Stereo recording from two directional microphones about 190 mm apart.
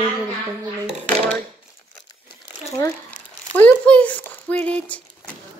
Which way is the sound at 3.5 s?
5° left (ahead or behind).